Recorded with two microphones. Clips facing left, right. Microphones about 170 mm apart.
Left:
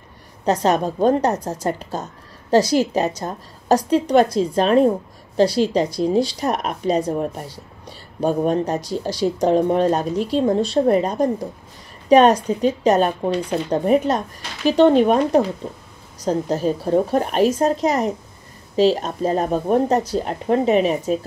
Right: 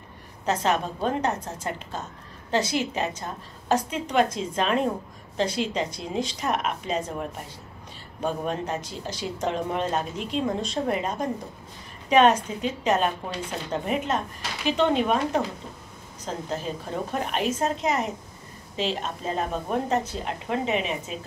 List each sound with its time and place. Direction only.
0.5 s speech: 40° left (ahead or behind)